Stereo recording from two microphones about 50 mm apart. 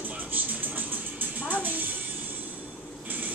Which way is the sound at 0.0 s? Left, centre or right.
Right.